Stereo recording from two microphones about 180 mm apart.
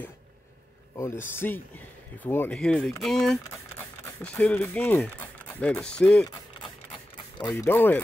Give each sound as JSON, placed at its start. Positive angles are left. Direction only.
{"t": 0.9, "sound": "speech", "side_deg": 15}
{"t": 6.6, "sound": "a sound", "side_deg": 25}
{"t": 7.6, "sound": "speech", "side_deg": 10}